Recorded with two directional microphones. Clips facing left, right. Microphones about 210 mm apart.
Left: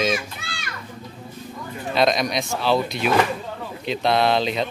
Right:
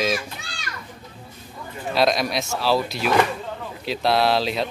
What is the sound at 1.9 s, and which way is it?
Speech, centre (ahead or behind).